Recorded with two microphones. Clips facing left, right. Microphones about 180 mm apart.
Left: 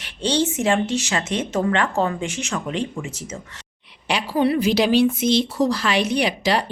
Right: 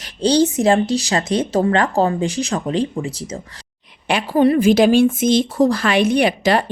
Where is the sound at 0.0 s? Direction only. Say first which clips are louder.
Right 6 dB; 40° right (ahead or behind).